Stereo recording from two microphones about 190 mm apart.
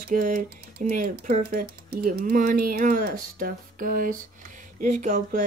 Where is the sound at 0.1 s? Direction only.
45° right (ahead or behind).